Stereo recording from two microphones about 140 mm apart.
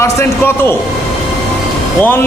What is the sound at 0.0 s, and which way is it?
Speech, 20° left (ahead or behind).